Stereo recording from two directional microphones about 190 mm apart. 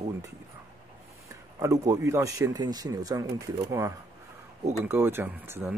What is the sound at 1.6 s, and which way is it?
Speech, 20° right (ahead or behind).